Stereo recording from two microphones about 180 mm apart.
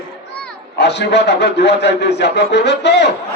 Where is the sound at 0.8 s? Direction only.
70° left (ahead or behind).